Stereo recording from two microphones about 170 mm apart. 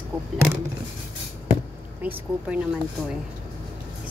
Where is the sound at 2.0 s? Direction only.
10° right (ahead or behind).